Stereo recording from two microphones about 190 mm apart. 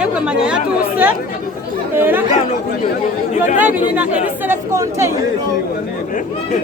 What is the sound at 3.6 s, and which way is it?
Speech, 10° right (ahead or behind).